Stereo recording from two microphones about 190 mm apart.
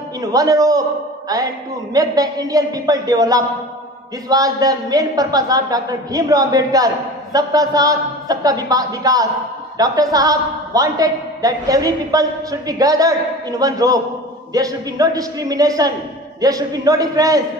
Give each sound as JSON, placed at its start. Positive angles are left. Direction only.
{"t": 0.2, "sound": "a woman's voice", "side_deg": -20}